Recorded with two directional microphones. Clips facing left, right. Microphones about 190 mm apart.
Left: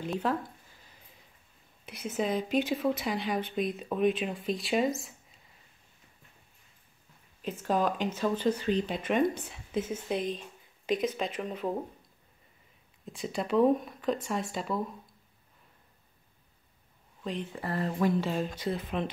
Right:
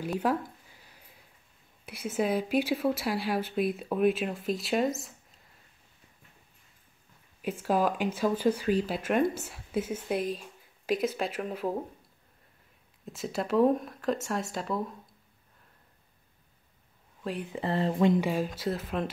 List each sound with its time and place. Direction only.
0.0 s a sound: 10° right (ahead or behind)
1.9 s speech: 10° right (ahead or behind)
7.4 s speech: 10° right (ahead or behind)
13.0 s speech: 5° right (ahead or behind)
17.2 s speech: 10° right (ahead or behind)
17.6 s speech: 25° right (ahead or behind)
18.2 s speech: 5° right (ahead or behind)